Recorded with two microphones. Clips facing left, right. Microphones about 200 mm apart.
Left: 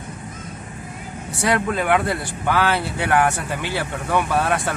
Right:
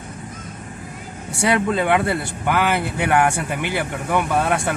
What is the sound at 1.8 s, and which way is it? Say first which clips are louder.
Speech: right 1 dB; 20° right (ahead or behind).